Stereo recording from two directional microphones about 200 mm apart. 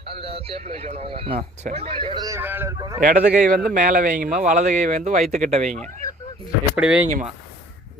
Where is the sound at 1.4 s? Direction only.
40° right (ahead or behind); by 3.0 s 15° right (ahead or behind).